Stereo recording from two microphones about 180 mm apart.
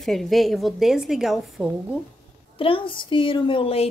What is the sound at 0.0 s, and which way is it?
A woman's voice, centre (ahead or behind).